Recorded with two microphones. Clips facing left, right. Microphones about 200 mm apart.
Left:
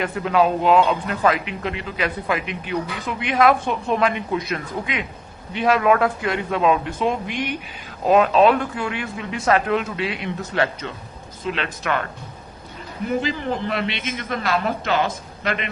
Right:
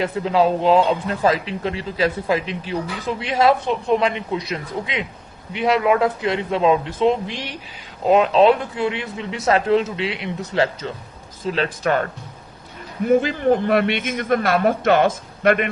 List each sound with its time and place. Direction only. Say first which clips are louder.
0.0 s a man's voice: right 1 dB; 25° right (ahead or behind)
13.1 s speech: right 7 dB; 55° right (ahead or behind)